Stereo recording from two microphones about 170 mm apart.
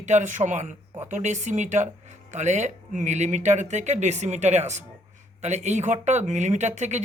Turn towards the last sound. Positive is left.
turn(degrees=-45)  # may be behind; listen again after turning